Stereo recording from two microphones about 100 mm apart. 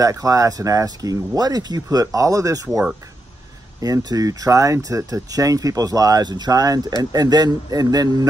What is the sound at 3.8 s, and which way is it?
Speech, 40° right (ahead or behind).